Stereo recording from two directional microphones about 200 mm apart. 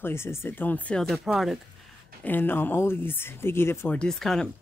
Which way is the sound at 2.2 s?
10° left (ahead or behind).